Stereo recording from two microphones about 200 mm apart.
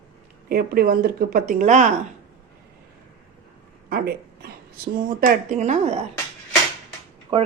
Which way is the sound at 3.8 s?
50° right (ahead or behind).